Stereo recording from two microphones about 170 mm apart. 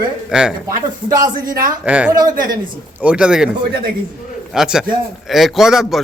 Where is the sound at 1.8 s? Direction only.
5° right (ahead or behind).